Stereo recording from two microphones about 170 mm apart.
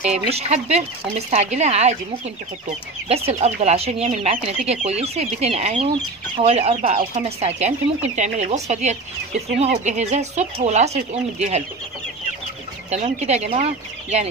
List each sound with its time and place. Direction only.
0.0 s speech: 40° right (ahead or behind)
3.1 s speech: 35° right (ahead or behind)
12.9 s speech: 40° right (ahead or behind)